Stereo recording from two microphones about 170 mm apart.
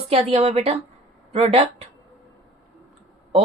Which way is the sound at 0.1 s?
35° right (ahead or behind).